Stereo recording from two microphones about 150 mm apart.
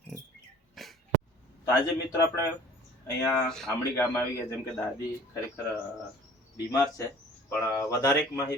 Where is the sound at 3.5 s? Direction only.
5° left (ahead or behind).